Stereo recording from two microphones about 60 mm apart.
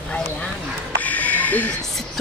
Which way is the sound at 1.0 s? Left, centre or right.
Left.